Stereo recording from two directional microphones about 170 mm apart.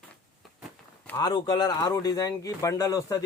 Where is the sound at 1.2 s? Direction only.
25° left (ahead or behind).